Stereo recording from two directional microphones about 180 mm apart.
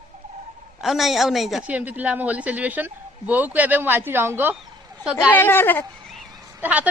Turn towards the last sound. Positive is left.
turn(degrees=-10)  # may be behind; listen again after turning